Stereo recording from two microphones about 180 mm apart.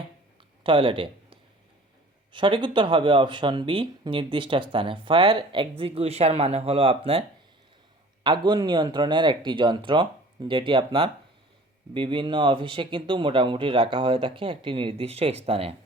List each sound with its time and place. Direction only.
0.6 s speech: 30° right (ahead or behind)
8.2 s speech: 25° right (ahead or behind)